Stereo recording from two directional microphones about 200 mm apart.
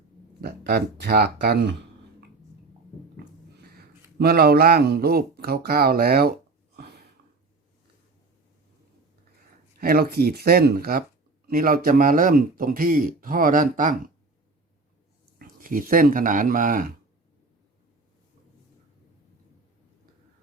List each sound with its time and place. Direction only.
0.4 s a man's voice: 55° right (ahead or behind)
3.6 s speech: 50° right (ahead or behind)
6.7 s a sound: 55° right (ahead or behind)
9.8 s a man's voice: 50° right (ahead or behind)
15.4 s speech: 45° right (ahead or behind)